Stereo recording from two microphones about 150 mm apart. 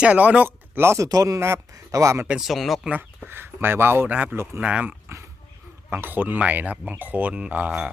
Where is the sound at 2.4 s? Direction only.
Centre (ahead or behind).